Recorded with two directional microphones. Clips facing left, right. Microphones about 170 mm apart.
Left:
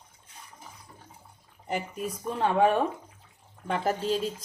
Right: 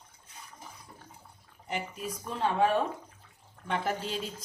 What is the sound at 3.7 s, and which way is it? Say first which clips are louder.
Speech: left 5 dB; 40° left (ahead or behind).